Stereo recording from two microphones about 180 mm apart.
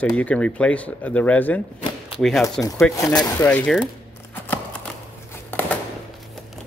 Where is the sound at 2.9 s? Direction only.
20° left (ahead or behind).